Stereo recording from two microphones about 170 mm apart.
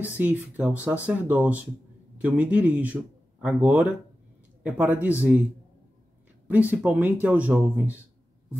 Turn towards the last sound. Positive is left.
turn(degrees=-10)  # may be behind; listen again after turning